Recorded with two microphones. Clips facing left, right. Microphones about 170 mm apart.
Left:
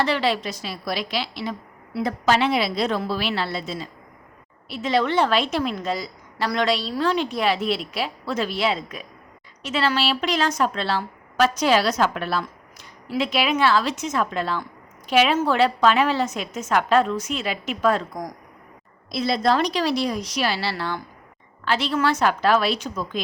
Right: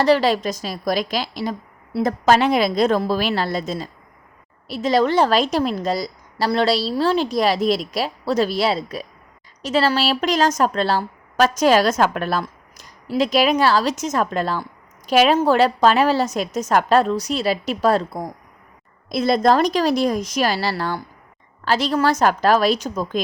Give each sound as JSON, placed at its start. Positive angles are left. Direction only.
{"t": 0.0, "sound": "a woman's voice", "side_deg": -40}
{"t": 19.0, "sound": "a woman's voice", "side_deg": -50}